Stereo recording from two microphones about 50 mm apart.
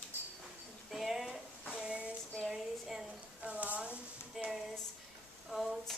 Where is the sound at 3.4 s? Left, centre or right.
Right.